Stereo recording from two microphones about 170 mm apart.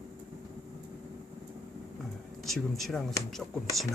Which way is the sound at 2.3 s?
Centre (ahead or behind).